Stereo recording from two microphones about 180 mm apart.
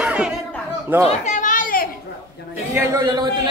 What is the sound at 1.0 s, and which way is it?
Children playing, 40° left (ahead or behind).